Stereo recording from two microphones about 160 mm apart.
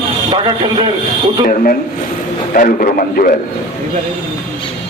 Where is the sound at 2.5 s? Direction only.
60° left (ahead or behind).